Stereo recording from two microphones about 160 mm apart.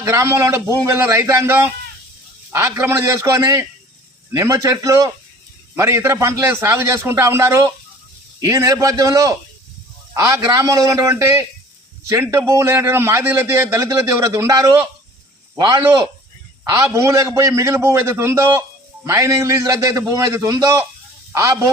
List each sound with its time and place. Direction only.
0.0 s a man's voice: 20° right (ahead or behind)